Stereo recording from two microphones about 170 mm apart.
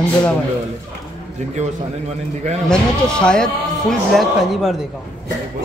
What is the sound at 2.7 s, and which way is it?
Speech, 5° left (ahead or behind).